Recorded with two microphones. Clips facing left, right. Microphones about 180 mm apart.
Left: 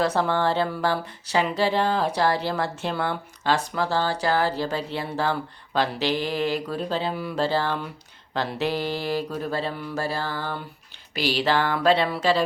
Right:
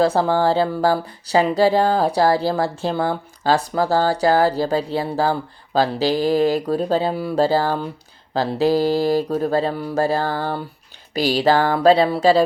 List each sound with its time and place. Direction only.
0.0 s speech: 35° right (ahead or behind)